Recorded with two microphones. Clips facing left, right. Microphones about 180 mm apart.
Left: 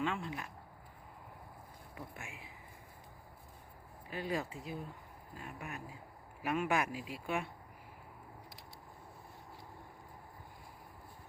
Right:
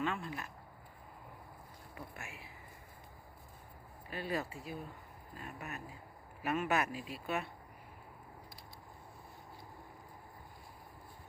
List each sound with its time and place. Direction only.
0.0 s speech: 15° left (ahead or behind)
2.0 s speech: 15° left (ahead or behind)
4.1 s speech: 15° left (ahead or behind)